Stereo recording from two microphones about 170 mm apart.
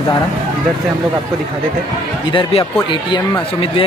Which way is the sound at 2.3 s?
35° left (ahead or behind).